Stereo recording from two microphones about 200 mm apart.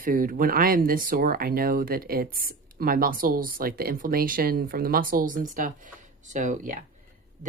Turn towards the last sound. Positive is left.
turn(degrees=-40)  # may be behind; listen again after turning